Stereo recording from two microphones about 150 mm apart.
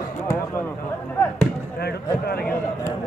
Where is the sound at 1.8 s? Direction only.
90° left.